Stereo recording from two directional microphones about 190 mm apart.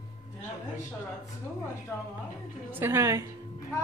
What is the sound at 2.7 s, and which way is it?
Speech, 10° right (ahead or behind).